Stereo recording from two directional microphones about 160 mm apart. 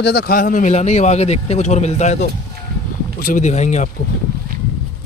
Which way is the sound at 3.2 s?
50° left (ahead or behind).